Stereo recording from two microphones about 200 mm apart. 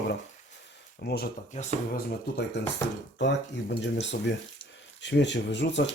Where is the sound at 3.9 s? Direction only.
60° left (ahead or behind).